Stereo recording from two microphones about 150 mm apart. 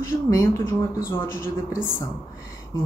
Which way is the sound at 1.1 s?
15° left (ahead or behind).